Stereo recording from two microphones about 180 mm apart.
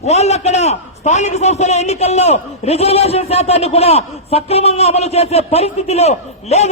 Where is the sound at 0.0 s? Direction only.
40° left (ahead or behind).